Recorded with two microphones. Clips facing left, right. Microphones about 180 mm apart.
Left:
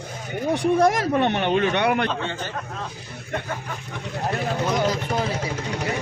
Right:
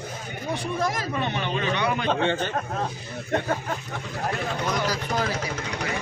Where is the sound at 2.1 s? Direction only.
55° right (ahead or behind).